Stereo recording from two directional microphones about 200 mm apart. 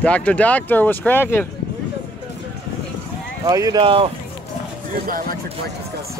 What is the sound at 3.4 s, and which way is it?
Speech, 15° right (ahead or behind).